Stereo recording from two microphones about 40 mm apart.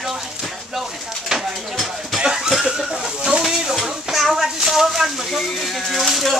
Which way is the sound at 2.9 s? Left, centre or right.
Right.